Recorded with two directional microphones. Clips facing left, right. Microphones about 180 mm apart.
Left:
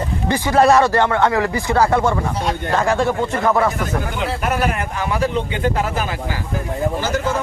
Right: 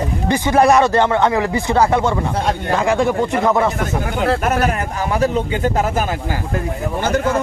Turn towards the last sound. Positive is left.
turn(degrees=-55)  # may be behind; listen again after turning